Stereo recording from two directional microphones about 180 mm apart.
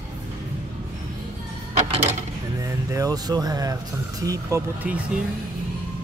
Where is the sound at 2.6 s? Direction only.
15° right (ahead or behind).